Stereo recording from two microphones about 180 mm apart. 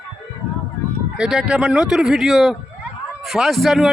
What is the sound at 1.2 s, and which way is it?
Speech, 5° right (ahead or behind).